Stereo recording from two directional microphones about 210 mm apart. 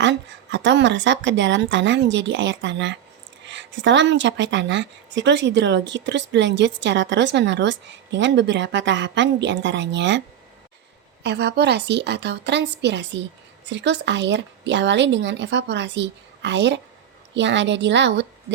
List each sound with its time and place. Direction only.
0.0 s a woman's voice: 60° right (ahead or behind)